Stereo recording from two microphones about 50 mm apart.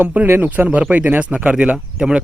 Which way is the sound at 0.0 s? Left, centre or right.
Right.